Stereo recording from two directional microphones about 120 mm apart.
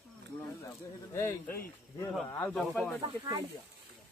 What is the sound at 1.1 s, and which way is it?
Speech, 20° left (ahead or behind).